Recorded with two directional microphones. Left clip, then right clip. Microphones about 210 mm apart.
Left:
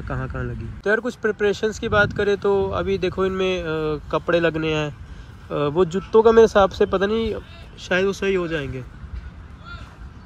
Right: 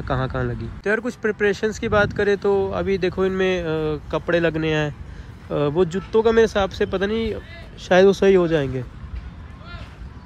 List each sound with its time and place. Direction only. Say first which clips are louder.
0.0 s speech: right 6 dB; centre (ahead or behind)
7.9 s speech: right 6 dB; 20° right (ahead or behind)